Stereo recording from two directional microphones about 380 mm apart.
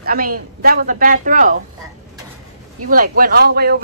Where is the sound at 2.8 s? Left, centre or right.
Right.